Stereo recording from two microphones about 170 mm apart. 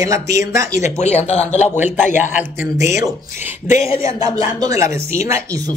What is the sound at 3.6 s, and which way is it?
Speech, 40° left (ahead or behind).